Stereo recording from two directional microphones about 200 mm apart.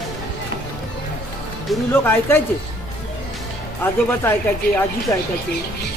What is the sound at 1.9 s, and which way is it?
Speech, 10° left (ahead or behind).